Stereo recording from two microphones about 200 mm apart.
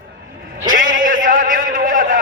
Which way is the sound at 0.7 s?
45° right (ahead or behind).